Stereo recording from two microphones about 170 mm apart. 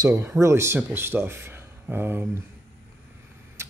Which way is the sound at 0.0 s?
15° right (ahead or behind).